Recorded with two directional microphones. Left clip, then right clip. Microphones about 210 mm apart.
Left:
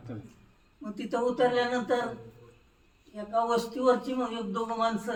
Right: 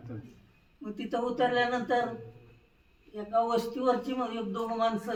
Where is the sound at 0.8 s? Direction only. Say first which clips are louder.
Left 3 dB; centre (ahead or behind).